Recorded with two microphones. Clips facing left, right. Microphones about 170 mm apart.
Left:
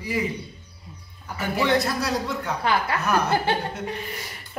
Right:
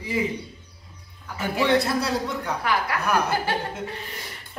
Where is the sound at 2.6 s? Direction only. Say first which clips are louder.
Left 2 dB; 25° left (ahead or behind).